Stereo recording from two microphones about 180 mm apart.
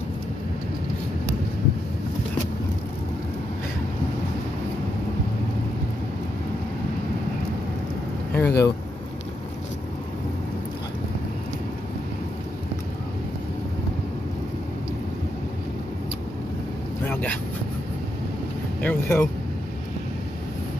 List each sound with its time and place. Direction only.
8.3 s vehicle: 10° left (ahead or behind)
17.1 s vehicle: 10° left (ahead or behind)
18.8 s vehicle: 10° left (ahead or behind)